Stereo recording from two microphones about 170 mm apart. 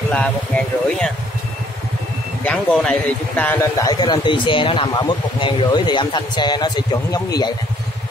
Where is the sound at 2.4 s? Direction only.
10° left (ahead or behind).